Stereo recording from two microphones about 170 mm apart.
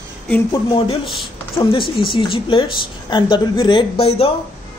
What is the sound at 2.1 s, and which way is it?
A woman's voice, 30° left (ahead or behind).